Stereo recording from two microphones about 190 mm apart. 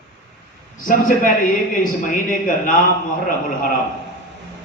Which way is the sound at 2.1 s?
45° left (ahead or behind).